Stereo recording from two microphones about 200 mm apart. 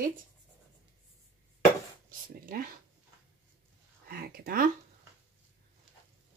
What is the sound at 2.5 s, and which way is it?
Speech, 45° right (ahead or behind).